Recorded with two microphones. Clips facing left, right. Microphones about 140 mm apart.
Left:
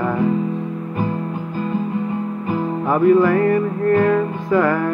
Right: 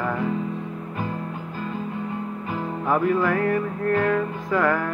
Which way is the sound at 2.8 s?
5° left (ahead or behind).